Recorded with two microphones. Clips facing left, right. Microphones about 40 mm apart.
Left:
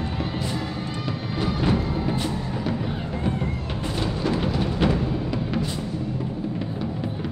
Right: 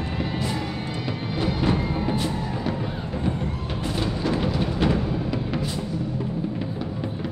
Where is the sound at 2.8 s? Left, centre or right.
Centre.